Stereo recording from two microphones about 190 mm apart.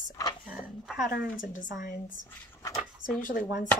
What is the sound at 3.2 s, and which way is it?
Speech, 50° left (ahead or behind).